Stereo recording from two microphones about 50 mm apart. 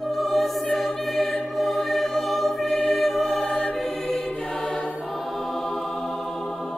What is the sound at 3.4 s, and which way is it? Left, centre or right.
Choir, left.